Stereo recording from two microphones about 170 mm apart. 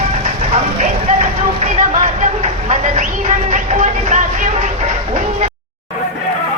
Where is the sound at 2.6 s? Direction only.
40° right (ahead or behind).